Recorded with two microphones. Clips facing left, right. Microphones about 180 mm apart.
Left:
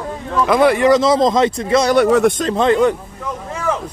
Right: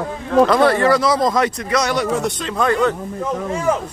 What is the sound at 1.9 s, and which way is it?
Speech, 60° left (ahead or behind).